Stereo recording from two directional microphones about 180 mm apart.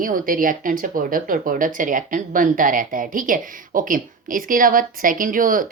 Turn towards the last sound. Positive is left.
turn(degrees=-50)  # may be behind; listen again after turning